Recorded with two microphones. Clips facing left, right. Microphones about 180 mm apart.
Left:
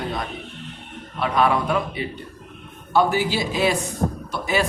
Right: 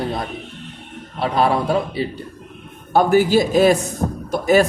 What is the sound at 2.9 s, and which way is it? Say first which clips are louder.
A man's voice: right 6 dB; 45° right (ahead or behind).